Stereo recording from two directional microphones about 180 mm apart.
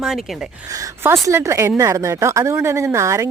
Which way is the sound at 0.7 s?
20° right (ahead or behind).